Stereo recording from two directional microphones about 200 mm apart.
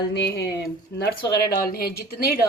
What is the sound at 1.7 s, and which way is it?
Speech, 50° left (ahead or behind).